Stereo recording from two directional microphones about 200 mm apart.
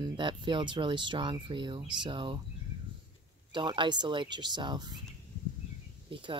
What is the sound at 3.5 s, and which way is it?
Speech, 25° right (ahead or behind).